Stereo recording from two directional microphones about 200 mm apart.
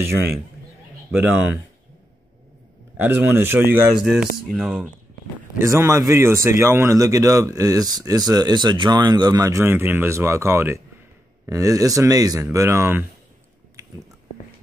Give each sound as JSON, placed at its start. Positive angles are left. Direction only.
{"t": 3.0, "sound": "a man's voice", "side_deg": -10}
{"t": 5.6, "sound": "a man's voice", "side_deg": -15}
{"t": 13.8, "sound": "biting", "side_deg": -15}